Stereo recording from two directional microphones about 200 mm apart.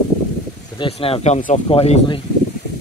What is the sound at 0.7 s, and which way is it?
Speech, 25° left (ahead or behind).